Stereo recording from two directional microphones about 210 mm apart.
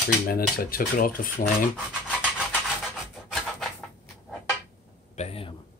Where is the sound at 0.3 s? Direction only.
45° left (ahead or behind).